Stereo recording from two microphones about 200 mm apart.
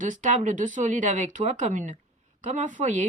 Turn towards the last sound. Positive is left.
turn(degrees=-40)  # may be behind; listen again after turning